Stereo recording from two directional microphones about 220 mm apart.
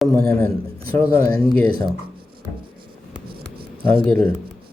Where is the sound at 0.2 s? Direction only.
45° right (ahead or behind).